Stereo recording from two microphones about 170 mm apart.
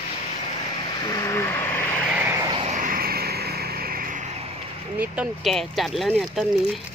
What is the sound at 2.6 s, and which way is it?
Vehicle, 50° right (ahead or behind).